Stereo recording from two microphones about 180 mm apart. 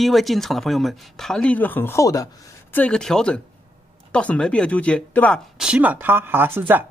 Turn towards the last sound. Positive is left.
turn(degrees=-10)  # may be behind; listen again after turning